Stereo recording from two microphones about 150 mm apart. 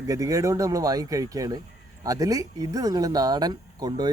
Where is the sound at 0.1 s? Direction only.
20° right (ahead or behind).